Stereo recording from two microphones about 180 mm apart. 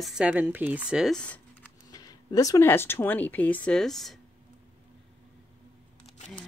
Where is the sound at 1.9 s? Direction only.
20° left (ahead or behind); by 4.2 s centre (ahead or behind).